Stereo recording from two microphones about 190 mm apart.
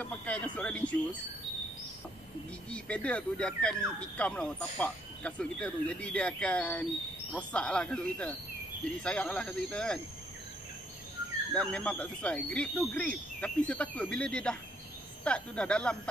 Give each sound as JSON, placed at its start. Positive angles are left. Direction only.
{"t": 0.0, "sound": "a sound", "side_deg": 5}
{"t": 2.7, "sound": "speech", "side_deg": 5}
{"t": 11.5, "sound": "speech", "side_deg": 5}